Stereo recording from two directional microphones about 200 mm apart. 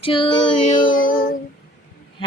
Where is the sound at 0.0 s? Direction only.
25° left (ahead or behind).